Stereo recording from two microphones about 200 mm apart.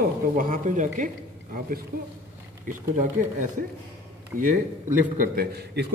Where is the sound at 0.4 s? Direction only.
40° right (ahead or behind).